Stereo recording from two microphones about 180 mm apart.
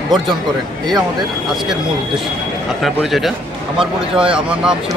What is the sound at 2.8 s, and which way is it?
A man's voice, centre (ahead or behind).